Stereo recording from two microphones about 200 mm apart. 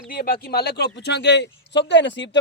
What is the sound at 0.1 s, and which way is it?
Speech, 50° left (ahead or behind).